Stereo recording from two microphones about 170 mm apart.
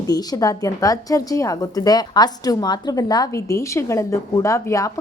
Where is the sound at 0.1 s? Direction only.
20° left (ahead or behind).